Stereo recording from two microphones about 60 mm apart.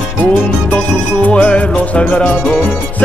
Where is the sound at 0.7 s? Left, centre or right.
Left.